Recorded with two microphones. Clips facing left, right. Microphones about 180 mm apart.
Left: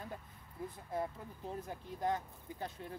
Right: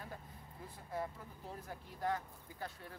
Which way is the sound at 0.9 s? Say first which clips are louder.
Left 2 dB; 20° left (ahead or behind).